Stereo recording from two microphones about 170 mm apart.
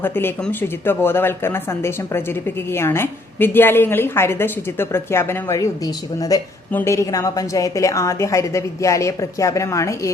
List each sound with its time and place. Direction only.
0.0 s a woman's voice: 10° left (ahead or behind)